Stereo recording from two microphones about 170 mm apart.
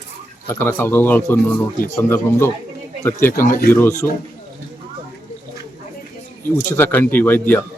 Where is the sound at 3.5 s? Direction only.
60° left (ahead or behind).